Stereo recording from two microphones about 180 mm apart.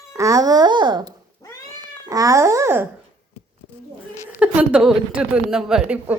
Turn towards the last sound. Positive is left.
turn(degrees=-5)  # may be behind; listen again after turning